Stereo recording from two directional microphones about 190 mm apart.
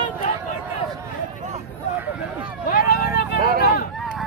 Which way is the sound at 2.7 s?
50° left (ahead or behind).